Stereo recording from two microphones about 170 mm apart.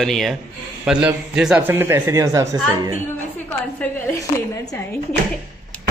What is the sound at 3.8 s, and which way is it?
A man's voice, 15° left (ahead or behind).